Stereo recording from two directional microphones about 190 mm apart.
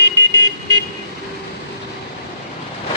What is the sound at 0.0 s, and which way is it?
Vehicle, 70° left (ahead or behind).